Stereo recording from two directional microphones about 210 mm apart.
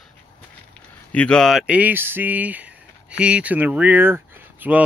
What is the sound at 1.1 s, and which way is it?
Speech, 5° left (ahead or behind).